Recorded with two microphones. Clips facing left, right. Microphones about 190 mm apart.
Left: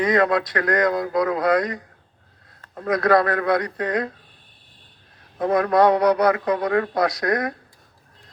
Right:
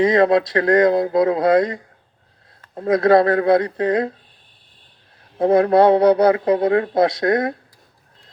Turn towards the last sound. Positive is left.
turn(degrees=-25)  # may be behind; listen again after turning